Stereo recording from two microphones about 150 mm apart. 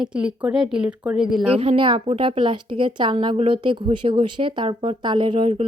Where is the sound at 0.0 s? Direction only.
5° right (ahead or behind).